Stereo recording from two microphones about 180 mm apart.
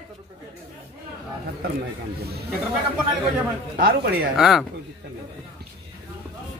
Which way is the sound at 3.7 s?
55° right (ahead or behind).